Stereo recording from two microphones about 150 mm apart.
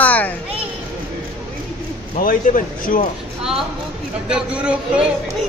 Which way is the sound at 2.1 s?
65° left (ahead or behind).